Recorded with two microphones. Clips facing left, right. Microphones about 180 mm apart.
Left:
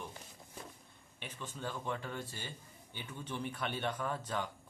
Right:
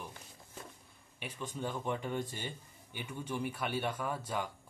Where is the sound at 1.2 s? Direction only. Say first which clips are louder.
Right 4 dB; 15° right (ahead or behind).